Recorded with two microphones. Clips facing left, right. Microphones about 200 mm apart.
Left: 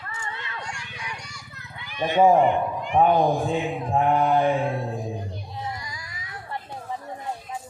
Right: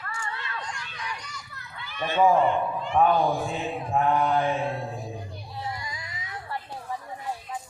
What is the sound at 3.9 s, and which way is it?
Mantra, 30° left (ahead or behind).